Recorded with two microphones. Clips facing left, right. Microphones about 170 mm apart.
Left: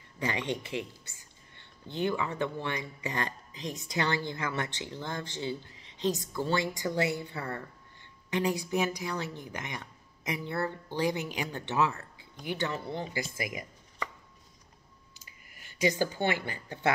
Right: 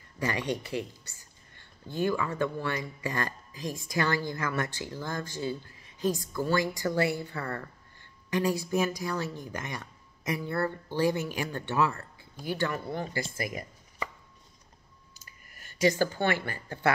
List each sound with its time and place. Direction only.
0.2 s speech: 20° left (ahead or behind)
15.2 s speech: 15° left (ahead or behind)